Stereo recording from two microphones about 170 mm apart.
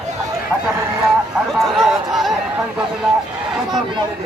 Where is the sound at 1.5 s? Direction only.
Centre (ahead or behind).